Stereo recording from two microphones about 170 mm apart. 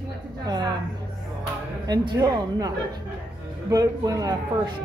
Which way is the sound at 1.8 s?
25° right (ahead or behind).